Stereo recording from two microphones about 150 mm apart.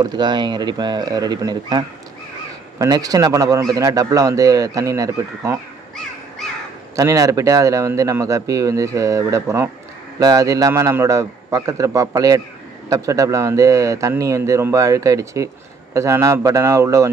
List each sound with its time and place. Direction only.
0.0 s speech: 30° right (ahead or behind)
7.0 s speech: 20° right (ahead or behind)